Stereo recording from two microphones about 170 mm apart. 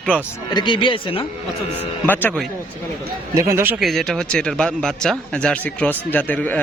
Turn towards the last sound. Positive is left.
turn(degrees=10)  # may be behind; listen again after turning